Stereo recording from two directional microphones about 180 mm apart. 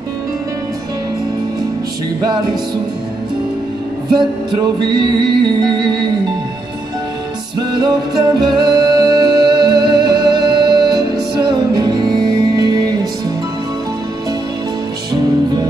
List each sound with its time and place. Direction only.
4.1 s music: 25° right (ahead or behind)
7.5 s music: 25° right (ahead or behind)